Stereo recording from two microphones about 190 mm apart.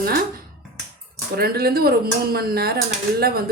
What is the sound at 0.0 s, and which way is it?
A woman's voice, 55° right (ahead or behind).